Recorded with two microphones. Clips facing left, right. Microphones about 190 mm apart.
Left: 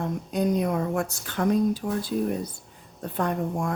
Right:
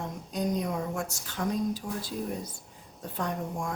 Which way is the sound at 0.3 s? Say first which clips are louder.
Left 5 dB; 60° left (ahead or behind).